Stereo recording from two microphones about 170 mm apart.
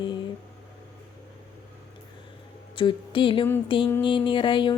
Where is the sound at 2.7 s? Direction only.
30° left (ahead or behind).